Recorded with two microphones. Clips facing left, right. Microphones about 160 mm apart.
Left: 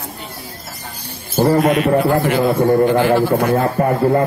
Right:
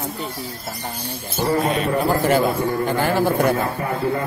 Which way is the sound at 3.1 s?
55° left (ahead or behind).